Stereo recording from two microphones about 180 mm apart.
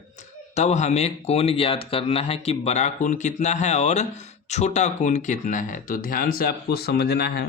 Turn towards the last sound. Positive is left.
turn(degrees=60)  # may be behind; listen again after turning